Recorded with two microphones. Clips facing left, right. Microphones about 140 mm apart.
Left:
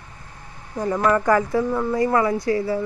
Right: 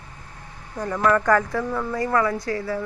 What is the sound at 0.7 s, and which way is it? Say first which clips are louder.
Speech: left 1 dB; 15° left (ahead or behind).